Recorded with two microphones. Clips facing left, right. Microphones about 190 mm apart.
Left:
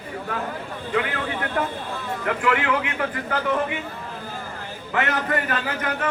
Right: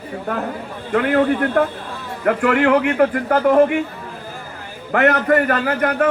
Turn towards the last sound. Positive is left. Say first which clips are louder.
# right 9 dB
turn(degrees=-55)  # may be behind; listen again after turning